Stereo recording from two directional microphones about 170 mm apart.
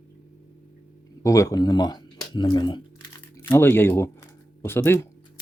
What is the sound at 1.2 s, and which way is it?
Speech, 20° left (ahead or behind).